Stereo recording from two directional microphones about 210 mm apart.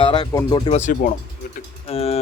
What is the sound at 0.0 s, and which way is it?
Speech, 20° left (ahead or behind).